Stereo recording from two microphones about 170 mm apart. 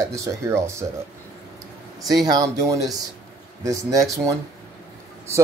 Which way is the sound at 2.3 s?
20° right (ahead or behind).